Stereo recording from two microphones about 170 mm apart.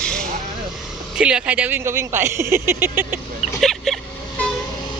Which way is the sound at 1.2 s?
5° right (ahead or behind).